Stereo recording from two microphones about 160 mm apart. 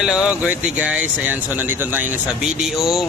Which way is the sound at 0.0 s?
5° right (ahead or behind).